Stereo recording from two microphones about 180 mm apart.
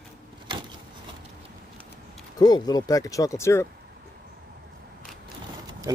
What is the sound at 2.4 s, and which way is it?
Speech, 20° left (ahead or behind).